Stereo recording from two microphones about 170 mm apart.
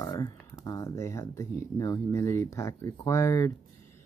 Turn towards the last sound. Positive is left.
turn(degrees=15)  # may be behind; listen again after turning